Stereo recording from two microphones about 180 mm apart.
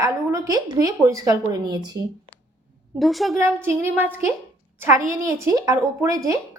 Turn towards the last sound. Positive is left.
turn(degrees=-15)  # may be behind; listen again after turning